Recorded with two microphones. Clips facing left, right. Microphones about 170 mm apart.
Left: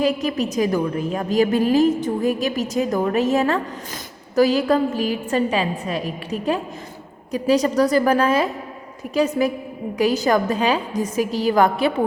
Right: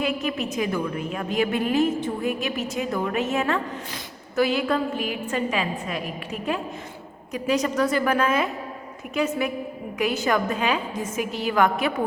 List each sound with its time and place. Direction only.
0.0 s a woman's voice: 35° left (ahead or behind)